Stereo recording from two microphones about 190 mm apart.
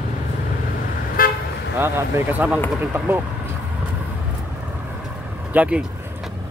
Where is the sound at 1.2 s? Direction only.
50° left (ahead or behind).